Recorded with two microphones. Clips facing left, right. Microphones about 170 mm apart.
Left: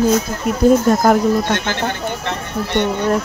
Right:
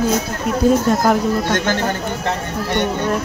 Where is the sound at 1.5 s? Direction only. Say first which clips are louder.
Right 2 dB; 40° right (ahead or behind).